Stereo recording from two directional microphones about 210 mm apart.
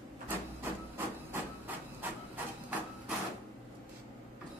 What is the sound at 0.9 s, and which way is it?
Hiss, 10° right (ahead or behind).